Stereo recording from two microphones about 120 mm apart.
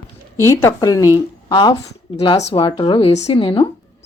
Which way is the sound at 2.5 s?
45° left (ahead or behind).